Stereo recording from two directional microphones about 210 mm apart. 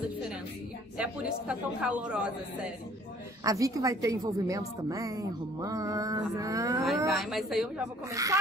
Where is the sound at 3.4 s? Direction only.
15° right (ahead or behind).